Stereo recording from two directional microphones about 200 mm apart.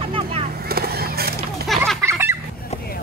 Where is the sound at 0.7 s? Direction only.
50° right (ahead or behind).